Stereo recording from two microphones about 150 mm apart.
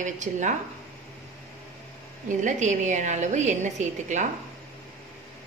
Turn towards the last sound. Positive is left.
turn(degrees=-55)  # may be behind; listen again after turning